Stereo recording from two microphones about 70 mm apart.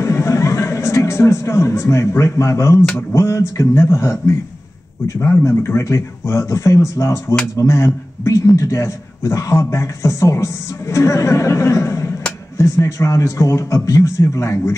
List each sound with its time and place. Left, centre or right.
0.0 s music: left
3.1 s a man's voice: left